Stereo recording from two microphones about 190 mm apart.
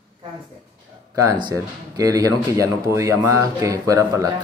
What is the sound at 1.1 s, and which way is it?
Speech, 20° right (ahead or behind).